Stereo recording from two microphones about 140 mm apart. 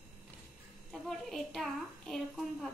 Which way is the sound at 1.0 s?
Centre (ahead or behind).